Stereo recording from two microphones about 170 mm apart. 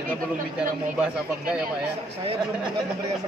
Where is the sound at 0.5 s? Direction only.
5° right (ahead or behind).